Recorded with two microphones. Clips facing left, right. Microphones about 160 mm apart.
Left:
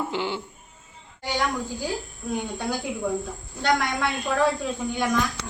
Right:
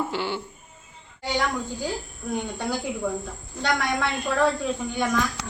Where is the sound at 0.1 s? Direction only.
15° left (ahead or behind).